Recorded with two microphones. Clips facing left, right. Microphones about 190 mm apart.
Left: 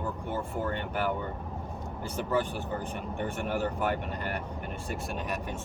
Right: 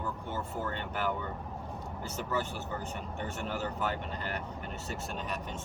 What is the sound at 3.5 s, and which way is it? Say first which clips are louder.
Speech: left 5 dB; 50° left (ahead or behind).